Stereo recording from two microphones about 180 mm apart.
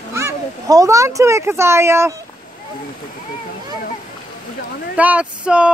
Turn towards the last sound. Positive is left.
turn(degrees=-5)  # may be behind; listen again after turning